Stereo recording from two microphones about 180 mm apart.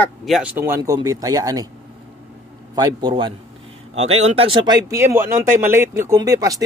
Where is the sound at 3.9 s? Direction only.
35° right (ahead or behind).